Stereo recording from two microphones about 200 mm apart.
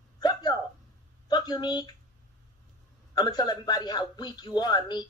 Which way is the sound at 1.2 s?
20° left (ahead or behind).